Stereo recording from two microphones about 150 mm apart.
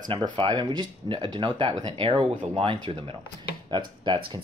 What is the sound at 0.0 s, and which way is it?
Speech, 30° right (ahead or behind).